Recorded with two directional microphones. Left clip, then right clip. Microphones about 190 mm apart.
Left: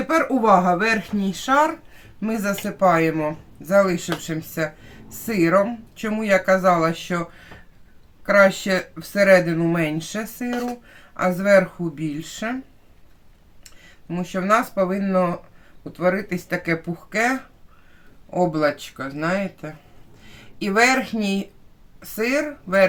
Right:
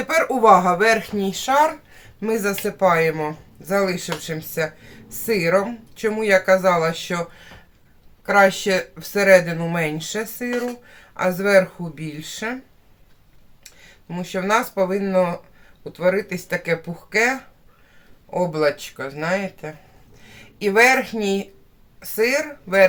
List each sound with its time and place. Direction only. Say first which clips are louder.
0.1 s speech: right 3 dB; 30° right (ahead or behind)
13.7 s speech: left 4 dB; 15° right (ahead or behind)
18.3 s speech: even; 20° right (ahead or behind)